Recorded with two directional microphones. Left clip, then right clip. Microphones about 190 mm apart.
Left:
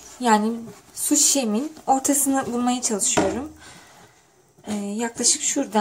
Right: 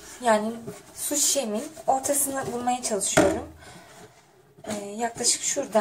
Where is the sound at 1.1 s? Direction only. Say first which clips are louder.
Left 5 dB; 40° left (ahead or behind).